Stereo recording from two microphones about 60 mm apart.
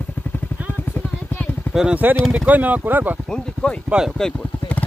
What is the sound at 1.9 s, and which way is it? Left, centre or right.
Speech, right.